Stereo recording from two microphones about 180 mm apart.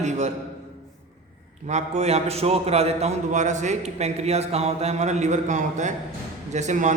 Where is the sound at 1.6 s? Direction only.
40° right (ahead or behind).